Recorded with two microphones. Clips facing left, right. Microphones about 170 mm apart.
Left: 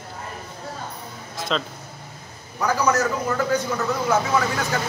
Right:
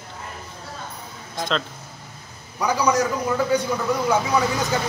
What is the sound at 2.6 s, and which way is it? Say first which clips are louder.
A man's voice: right 1 dB; 15° right (ahead or behind).